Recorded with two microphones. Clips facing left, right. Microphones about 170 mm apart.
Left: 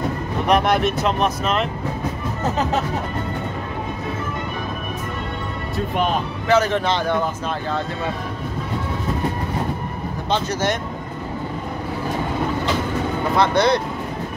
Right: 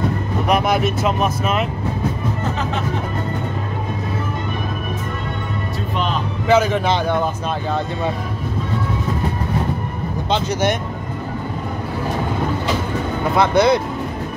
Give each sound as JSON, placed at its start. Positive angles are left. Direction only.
{"t": 0.5, "sound": "speech", "side_deg": -5}
{"t": 6.4, "sound": "speech", "side_deg": -10}
{"t": 10.3, "sound": "speech", "side_deg": -15}
{"t": 13.4, "sound": "speech", "side_deg": -5}